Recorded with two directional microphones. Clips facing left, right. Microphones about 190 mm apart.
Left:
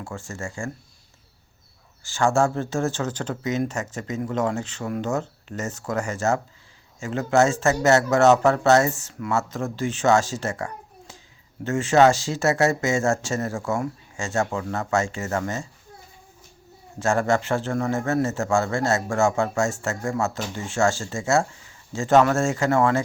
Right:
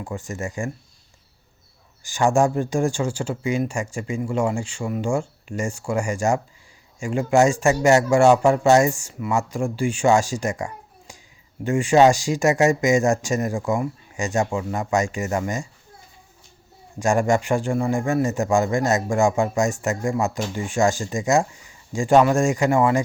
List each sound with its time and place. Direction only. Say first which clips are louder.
0.0 s speech: right 4 dB; 15° right (ahead or behind)
2.0 s speech: right 2 dB; 15° right (ahead or behind)
17.0 s speech: right 2 dB; 15° right (ahead or behind)